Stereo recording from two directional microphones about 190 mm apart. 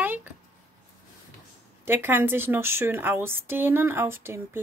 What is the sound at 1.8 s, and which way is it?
A woman's voice, 10° right (ahead or behind).